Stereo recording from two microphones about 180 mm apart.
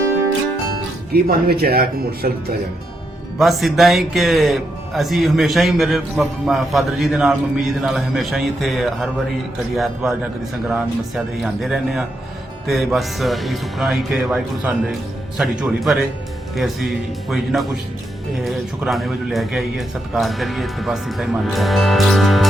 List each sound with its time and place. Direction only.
1.1 s speech: 60° right (ahead or behind)
3.3 s speech: centre (ahead or behind)